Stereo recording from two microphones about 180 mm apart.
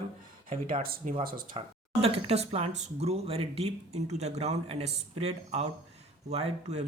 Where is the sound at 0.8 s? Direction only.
55° right (ahead or behind).